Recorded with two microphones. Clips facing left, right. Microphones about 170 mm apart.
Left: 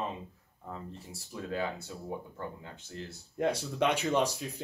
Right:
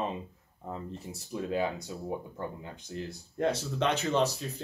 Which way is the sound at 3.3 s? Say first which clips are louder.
Even; 10° left (ahead or behind).